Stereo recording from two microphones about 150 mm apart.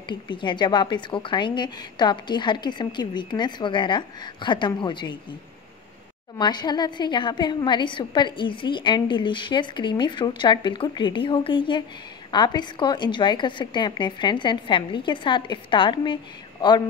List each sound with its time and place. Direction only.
0.1 s a woman's voice: 30° left (ahead or behind)
6.3 s a woman's voice: 30° left (ahead or behind)